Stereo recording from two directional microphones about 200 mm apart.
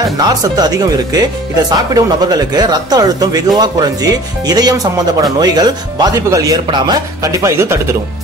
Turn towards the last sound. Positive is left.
turn(degrees=-15)  # may be behind; listen again after turning